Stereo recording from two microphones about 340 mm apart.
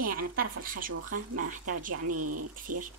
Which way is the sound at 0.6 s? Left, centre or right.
Right.